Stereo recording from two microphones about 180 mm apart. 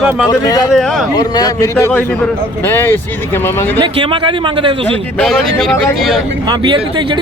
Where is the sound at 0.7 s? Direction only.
Centre (ahead or behind).